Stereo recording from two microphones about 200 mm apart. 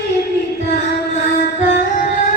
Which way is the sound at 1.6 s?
40° left (ahead or behind).